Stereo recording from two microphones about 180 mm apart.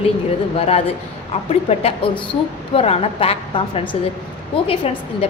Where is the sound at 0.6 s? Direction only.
35° left (ahead or behind).